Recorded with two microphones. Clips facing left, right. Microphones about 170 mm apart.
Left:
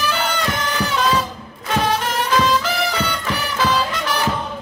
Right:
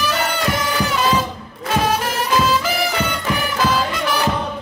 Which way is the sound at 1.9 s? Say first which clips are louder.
Even; 5° right (ahead or behind).